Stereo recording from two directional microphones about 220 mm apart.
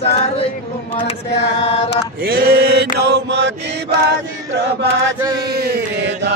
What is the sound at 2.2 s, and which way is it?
Chant, 45° right (ahead or behind).